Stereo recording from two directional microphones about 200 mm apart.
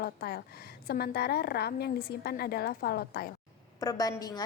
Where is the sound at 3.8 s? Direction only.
15° left (ahead or behind).